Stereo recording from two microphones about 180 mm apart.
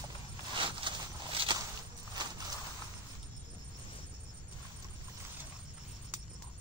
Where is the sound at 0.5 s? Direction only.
25° right (ahead or behind).